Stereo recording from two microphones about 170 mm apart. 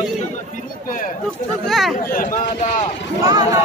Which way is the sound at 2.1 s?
50° left (ahead or behind).